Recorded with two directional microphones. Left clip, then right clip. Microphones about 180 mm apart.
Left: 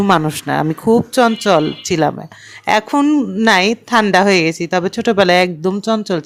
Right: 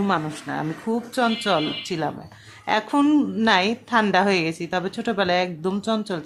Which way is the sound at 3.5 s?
40° left (ahead or behind).